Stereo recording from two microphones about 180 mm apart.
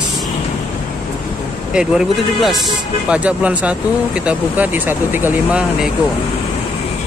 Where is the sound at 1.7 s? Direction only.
5° right (ahead or behind).